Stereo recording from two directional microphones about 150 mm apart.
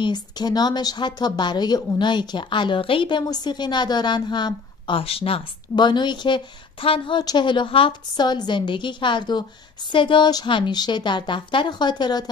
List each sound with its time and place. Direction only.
0.0 s a woman's voice: 30° left (ahead or behind)